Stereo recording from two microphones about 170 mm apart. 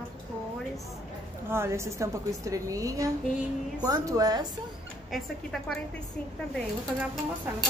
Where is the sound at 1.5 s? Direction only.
15° right (ahead or behind).